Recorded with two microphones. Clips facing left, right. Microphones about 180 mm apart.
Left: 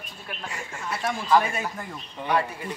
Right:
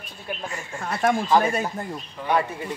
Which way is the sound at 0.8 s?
55° right (ahead or behind).